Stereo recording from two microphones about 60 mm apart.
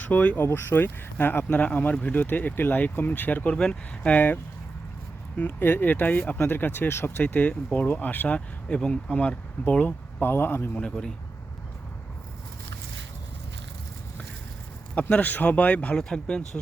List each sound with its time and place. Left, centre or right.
0.0 s speech: left
0.3 s speech: left; by 4.2 s centre
5.4 s speech: left
6.4 s speech: left
7.3 s speech: left
8.7 s speech: centre
10.2 s speech: left
10.8 s speech: centre
15.1 s speech: left
16.0 s speech: centre